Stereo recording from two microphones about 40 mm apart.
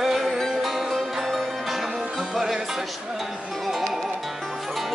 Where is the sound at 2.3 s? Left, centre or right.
Centre.